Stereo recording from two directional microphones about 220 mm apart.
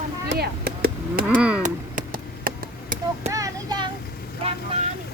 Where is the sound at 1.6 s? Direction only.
40° right (ahead or behind).